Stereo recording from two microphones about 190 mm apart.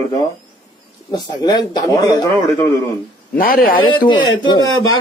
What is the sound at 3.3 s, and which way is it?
Speech, 50° left (ahead or behind).